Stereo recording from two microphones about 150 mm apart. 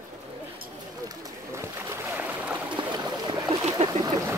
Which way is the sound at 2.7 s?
30° right (ahead or behind).